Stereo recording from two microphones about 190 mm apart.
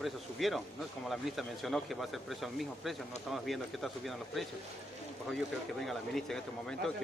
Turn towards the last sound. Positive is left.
turn(degrees=0)  # may be behind; listen again after turning